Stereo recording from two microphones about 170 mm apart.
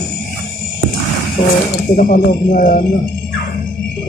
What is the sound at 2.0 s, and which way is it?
Speech, 50° left (ahead or behind).